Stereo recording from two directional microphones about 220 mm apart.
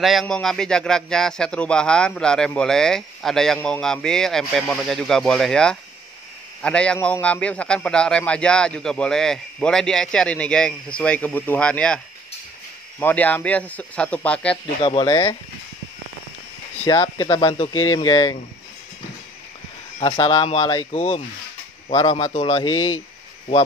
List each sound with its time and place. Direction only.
0.0 s a man's voice: centre (ahead or behind)
13.0 s speech: 5° left (ahead or behind)
14.8 s speech: 25° left (ahead or behind)
16.8 s speech: 20° left (ahead or behind)
20.0 s speech: 20° left (ahead or behind)